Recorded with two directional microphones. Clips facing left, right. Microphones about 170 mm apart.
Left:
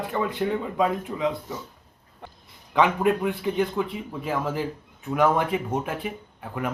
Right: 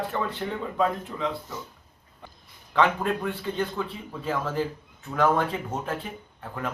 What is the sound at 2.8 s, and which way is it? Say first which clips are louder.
A man's voice: left 3 dB; 15° left (ahead or behind).